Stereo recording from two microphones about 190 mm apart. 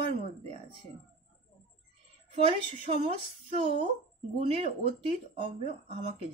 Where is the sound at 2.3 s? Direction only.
30° right (ahead or behind).